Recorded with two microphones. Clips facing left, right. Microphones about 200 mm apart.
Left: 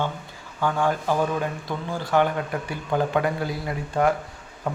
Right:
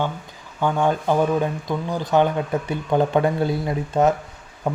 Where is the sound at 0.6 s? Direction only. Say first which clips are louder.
Right 3 dB; 20° right (ahead or behind).